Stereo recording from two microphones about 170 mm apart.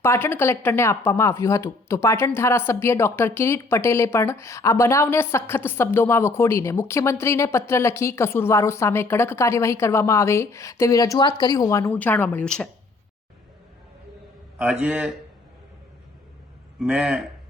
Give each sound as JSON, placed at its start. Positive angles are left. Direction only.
{"t": 0.0, "sound": "speech", "side_deg": 15}
{"t": 14.6, "sound": "a man's voice", "side_deg": -10}
{"t": 16.8, "sound": "a man's voice", "side_deg": -5}